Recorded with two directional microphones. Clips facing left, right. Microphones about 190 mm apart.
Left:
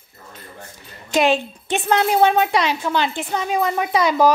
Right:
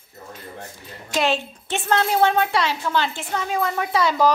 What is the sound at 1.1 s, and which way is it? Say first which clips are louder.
A woman's voice: left 5 dB; 15° left (ahead or behind).